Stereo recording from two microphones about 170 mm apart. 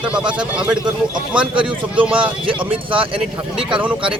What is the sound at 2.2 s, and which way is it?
Speech, 30° right (ahead or behind).